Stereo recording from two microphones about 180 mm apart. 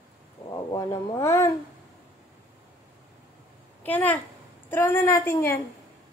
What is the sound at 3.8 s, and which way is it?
Speech, 10° left (ahead or behind).